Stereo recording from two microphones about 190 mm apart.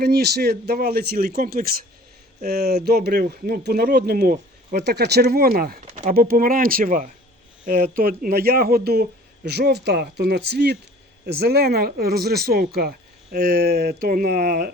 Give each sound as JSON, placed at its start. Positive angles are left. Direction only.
{"t": 0.0, "sound": "speech", "side_deg": -55}